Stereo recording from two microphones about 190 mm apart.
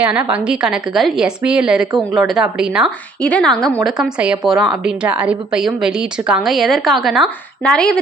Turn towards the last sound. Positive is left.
turn(degrees=5)  # may be behind; listen again after turning